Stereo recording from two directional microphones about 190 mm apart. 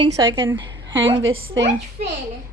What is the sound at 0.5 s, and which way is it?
A woman's voice, 70° right (ahead or behind).